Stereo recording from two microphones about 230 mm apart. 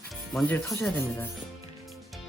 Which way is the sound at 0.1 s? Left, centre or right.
Centre.